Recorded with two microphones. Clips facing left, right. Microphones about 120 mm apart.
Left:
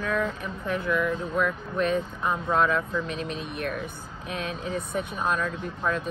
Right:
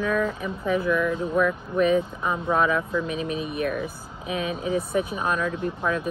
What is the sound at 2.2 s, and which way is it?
Speech, 5° right (ahead or behind).